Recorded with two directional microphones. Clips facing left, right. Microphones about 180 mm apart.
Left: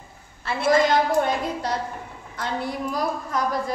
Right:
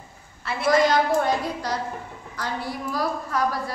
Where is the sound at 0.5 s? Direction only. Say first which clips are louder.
Even; 25° left (ahead or behind).